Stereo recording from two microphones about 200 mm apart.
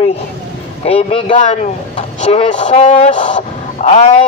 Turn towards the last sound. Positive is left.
turn(degrees=35)  # may be behind; listen again after turning